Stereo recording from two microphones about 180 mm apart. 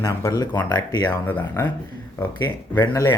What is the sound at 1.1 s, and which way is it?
Speech, 10° left (ahead or behind).